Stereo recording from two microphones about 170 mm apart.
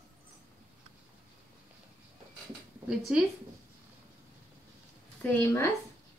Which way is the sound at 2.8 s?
5° right (ahead or behind).